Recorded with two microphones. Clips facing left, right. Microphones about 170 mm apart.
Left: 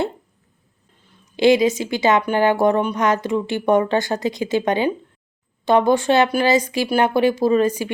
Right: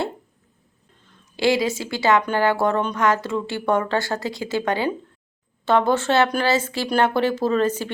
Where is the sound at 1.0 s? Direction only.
20° left (ahead or behind).